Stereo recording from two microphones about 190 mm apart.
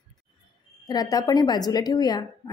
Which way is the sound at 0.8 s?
20° left (ahead or behind).